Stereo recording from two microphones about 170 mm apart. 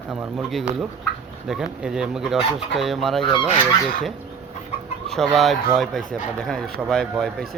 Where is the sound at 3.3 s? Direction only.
30° left (ahead or behind).